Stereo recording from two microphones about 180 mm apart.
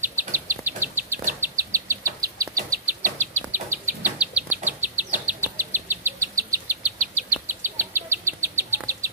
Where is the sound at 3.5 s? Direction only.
10° right (ahead or behind).